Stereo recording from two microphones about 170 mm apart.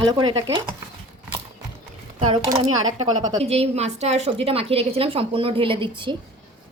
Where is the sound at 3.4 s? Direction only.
35° right (ahead or behind).